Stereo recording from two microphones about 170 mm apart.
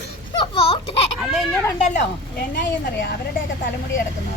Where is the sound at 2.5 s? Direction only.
80° left.